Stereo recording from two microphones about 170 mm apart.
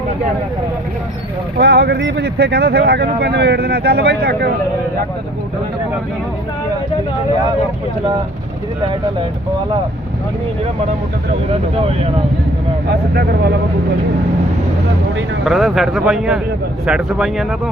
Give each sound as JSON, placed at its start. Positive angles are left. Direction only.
{"t": 1.5, "sound": "speech", "side_deg": -70}
{"t": 12.9, "sound": "speech", "side_deg": -70}
{"t": 15.4, "sound": "a man's voice", "side_deg": 0}